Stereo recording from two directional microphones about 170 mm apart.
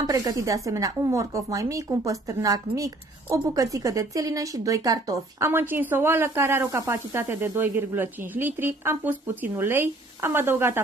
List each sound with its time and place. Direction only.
0.0 s a woman's voice: 20° right (ahead or behind)